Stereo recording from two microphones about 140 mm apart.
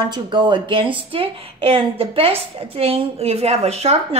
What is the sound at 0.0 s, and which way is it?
A woman's voice, 35° right (ahead or behind).